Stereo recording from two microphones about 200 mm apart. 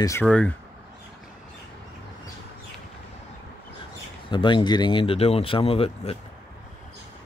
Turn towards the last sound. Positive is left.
turn(degrees=30)  # may be behind; listen again after turning